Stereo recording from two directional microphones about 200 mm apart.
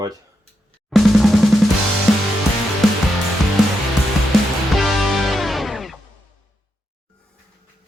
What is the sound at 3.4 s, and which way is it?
Music, centre (ahead or behind).